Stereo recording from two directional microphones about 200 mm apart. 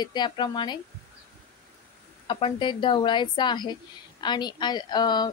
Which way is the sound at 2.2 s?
25° left (ahead or behind).